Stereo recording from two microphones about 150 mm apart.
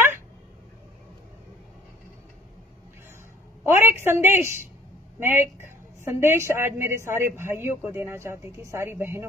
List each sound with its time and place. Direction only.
3.6 s a woman's voice: 15° right (ahead or behind)